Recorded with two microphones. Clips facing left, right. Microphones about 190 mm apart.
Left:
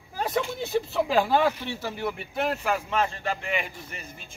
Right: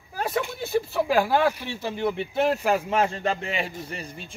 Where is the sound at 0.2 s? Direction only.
5° right (ahead or behind).